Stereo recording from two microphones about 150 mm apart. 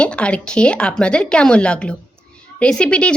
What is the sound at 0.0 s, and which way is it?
Speech, 5° left (ahead or behind).